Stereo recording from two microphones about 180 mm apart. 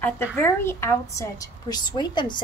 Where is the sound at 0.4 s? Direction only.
15° left (ahead or behind).